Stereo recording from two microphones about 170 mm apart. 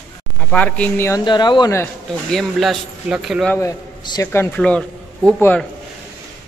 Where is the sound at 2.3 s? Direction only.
Centre (ahead or behind).